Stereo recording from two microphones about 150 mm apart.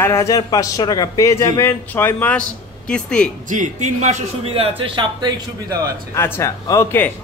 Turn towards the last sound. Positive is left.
turn(degrees=15)  # may be behind; listen again after turning